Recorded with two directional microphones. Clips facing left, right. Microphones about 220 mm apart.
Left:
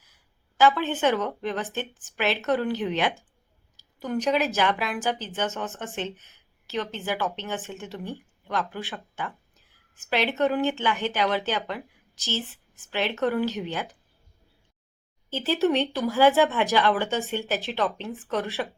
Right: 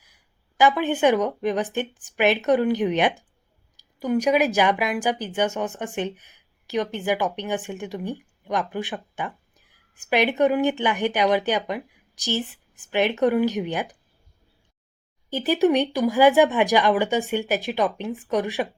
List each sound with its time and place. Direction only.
0.0 s a woman's voice: 15° right (ahead or behind)
15.3 s a woman's voice: 15° right (ahead or behind)